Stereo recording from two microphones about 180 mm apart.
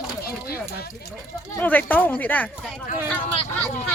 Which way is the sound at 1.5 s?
10° left (ahead or behind).